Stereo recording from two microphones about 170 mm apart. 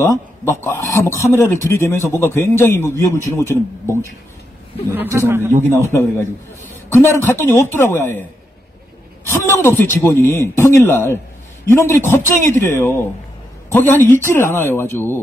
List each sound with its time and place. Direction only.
0.1 s a man's voice: 15° left (ahead or behind)
4.8 s a man's voice: 15° right (ahead or behind)
5.9 s a man's voice: 15° left (ahead or behind)
9.4 s a man's voice: 15° left (ahead or behind)